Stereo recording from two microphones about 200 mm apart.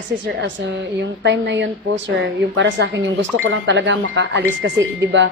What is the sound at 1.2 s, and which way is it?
Speech, 65° right (ahead or behind).